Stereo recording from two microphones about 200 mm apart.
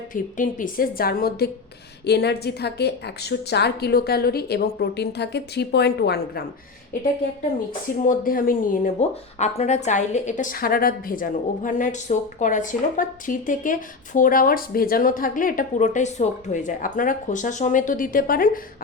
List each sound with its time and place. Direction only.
0.1 s a woman's voice: 45° left (ahead or behind)
8.0 s speech: 45° left (ahead or behind)